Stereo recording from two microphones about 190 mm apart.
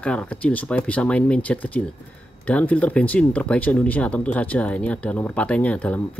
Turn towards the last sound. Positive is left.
turn(degrees=10)  # may be behind; listen again after turning